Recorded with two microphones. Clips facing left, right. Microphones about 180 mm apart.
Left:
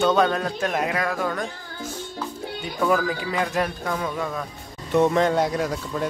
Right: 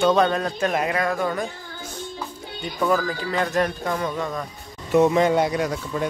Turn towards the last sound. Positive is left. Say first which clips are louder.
# right 1 dB
turn(degrees=0)  # may be behind; listen again after turning